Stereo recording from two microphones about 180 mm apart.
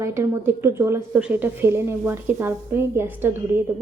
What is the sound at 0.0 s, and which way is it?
A woman's voice, 15° right (ahead or behind).